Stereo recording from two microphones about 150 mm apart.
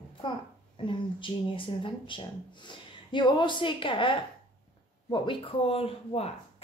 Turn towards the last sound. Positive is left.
turn(degrees=45)  # may be behind; listen again after turning